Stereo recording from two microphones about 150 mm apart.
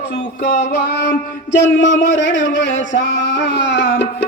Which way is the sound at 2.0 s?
55° left (ahead or behind).